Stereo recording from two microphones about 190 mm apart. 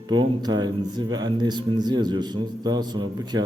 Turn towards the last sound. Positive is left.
turn(degrees=-20)  # may be behind; listen again after turning